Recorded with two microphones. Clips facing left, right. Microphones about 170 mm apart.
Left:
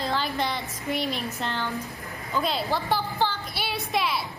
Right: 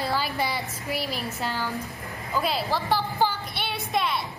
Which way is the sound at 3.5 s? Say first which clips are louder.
Even; centre (ahead or behind).